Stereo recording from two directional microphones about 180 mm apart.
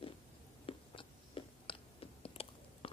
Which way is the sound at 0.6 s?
30° left (ahead or behind).